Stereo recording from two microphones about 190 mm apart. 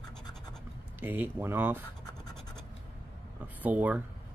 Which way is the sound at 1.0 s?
10° right (ahead or behind).